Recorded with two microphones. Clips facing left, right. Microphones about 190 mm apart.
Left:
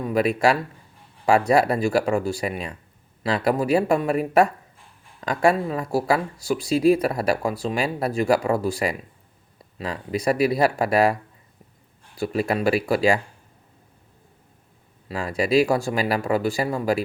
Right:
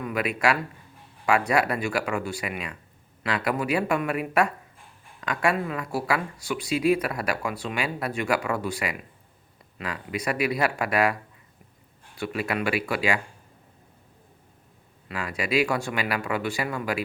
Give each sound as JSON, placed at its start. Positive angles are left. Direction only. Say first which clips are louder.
{"t": 0.0, "sound": "speech", "louder": "left 6 dB", "side_deg": 35}
{"t": 15.0, "sound": "speech", "louder": "left 6 dB", "side_deg": 35}